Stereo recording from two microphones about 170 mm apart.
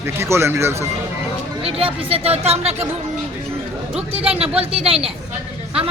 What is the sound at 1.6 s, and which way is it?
Speech, 35° right (ahead or behind).